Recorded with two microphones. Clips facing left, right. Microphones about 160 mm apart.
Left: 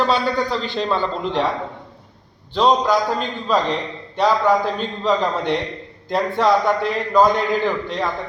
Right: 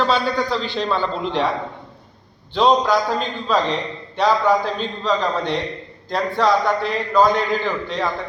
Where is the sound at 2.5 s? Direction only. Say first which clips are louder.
Even; centre (ahead or behind).